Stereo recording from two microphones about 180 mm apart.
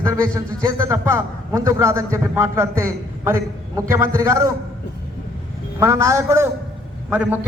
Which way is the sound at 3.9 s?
15° right (ahead or behind).